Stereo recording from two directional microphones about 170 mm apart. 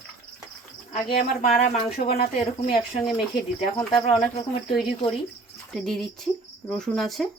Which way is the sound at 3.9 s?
30° left (ahead or behind).